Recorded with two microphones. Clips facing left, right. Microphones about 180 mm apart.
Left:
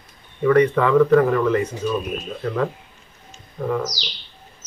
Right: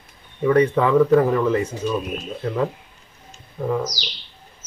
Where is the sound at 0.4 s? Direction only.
20° right (ahead or behind).